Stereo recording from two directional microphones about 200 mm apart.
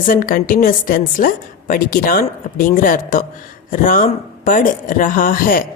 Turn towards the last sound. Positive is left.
turn(degrees=45)  # may be behind; listen again after turning